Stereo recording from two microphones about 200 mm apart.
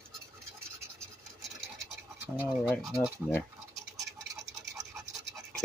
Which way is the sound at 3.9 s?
15° right (ahead or behind).